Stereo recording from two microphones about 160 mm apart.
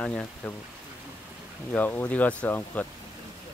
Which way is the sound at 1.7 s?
10° left (ahead or behind).